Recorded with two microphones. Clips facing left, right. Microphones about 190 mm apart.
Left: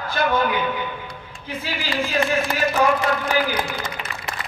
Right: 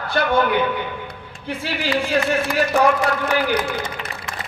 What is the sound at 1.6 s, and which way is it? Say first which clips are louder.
A man's voice: right 3 dB; 70° right (ahead or behind).